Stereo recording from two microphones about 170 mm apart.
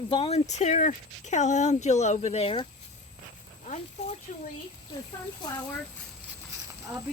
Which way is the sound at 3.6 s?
40° left (ahead or behind).